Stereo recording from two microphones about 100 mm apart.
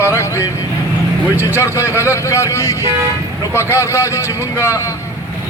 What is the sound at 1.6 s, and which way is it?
A man's voice, 30° left (ahead or behind).